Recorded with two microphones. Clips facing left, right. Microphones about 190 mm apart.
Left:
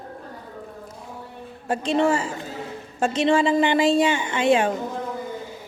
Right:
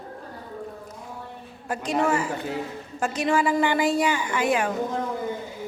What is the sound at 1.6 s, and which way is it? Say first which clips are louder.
A woman's voice: left 4 dB; 30° left (ahead or behind).